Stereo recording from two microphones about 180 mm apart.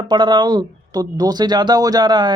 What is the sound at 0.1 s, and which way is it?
Speech, 25° right (ahead or behind).